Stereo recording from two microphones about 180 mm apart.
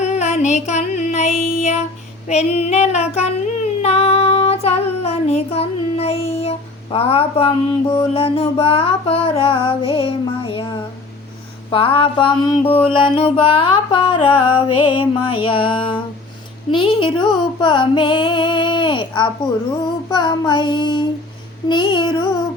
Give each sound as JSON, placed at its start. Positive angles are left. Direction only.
{"t": 0.0, "sound": "music", "side_deg": 40}
{"t": 3.8, "sound": "child singing", "side_deg": 35}
{"t": 7.9, "sound": "music", "side_deg": 30}
{"t": 11.7, "sound": "mantra", "side_deg": 30}
{"t": 16.7, "sound": "music", "side_deg": 30}
{"t": 20.1, "sound": "mantra", "side_deg": 25}